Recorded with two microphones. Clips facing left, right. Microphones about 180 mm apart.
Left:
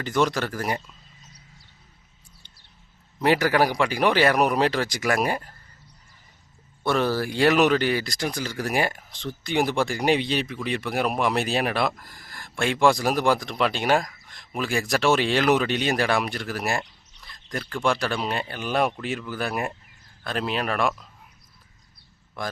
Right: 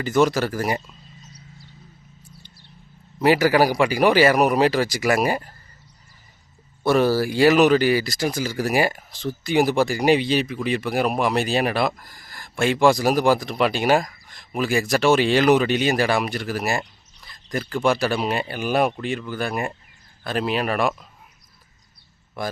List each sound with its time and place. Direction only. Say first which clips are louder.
0.0 s speech: right 5 dB; 5° right (ahead or behind)
3.2 s speech: right 4 dB; 5° right (ahead or behind)
6.8 s speech: right 5 dB; 10° right (ahead or behind)
22.4 s speech: right 3 dB; 5° right (ahead or behind)